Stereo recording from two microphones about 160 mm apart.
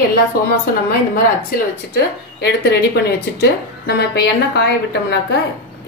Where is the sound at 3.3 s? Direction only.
90° left.